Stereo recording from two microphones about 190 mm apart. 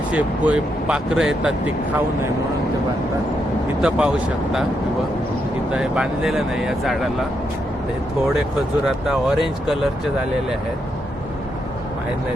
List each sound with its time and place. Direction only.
0.1 s speech: 5° right (ahead or behind)
3.8 s speech: 5° right (ahead or behind)
5.7 s speech: 5° right (ahead or behind)
9.0 s speech: centre (ahead or behind)